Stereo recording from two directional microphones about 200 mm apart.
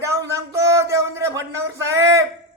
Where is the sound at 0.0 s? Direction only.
15° right (ahead or behind).